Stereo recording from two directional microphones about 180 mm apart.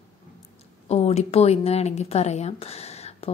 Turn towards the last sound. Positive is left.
turn(degrees=35)  # may be behind; listen again after turning